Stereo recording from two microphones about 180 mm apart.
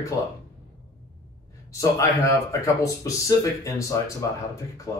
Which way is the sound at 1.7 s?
20° left (ahead or behind).